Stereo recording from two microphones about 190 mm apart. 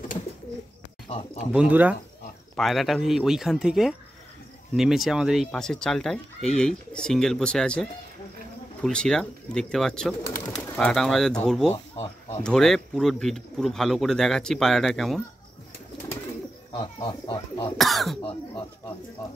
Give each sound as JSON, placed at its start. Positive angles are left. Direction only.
{"t": 1.0, "sound": "speech", "side_deg": 35}
{"t": 1.5, "sound": "speech", "side_deg": -5}
{"t": 11.7, "sound": "a sound", "side_deg": 30}
{"t": 12.4, "sound": "speech", "side_deg": 5}
{"t": 16.7, "sound": "speech", "side_deg": 25}
{"t": 17.7, "sound": "speech", "side_deg": 0}